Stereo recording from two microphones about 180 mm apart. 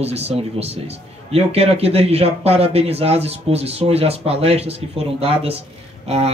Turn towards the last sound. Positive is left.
turn(degrees=-35)  # may be behind; listen again after turning